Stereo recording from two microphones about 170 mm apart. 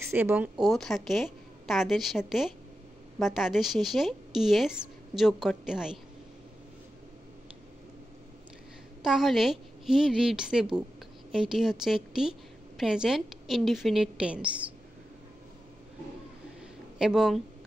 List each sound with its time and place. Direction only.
0.1 s a woman's voice: 10° right (ahead or behind)
0.6 s a woman's voice: centre (ahead or behind)
9.0 s a woman's voice: centre (ahead or behind)
17.0 s a woman's voice: 5° right (ahead or behind)